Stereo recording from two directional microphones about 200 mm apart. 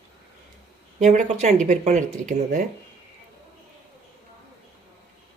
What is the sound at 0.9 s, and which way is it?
Speech, 35° right (ahead or behind).